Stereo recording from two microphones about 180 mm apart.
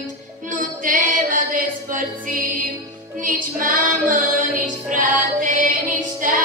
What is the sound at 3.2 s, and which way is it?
Music, 50° right (ahead or behind).